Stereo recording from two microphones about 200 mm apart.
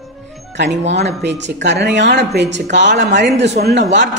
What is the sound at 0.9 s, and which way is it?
Speech, 60° right (ahead or behind).